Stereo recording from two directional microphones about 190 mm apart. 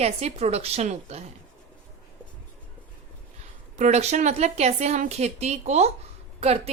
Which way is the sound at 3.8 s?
35° right (ahead or behind).